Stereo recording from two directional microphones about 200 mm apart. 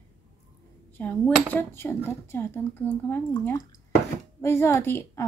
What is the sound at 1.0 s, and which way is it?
Speech, 10° left (ahead or behind).